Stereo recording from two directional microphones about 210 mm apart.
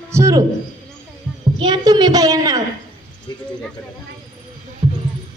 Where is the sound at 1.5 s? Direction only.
20° right (ahead or behind).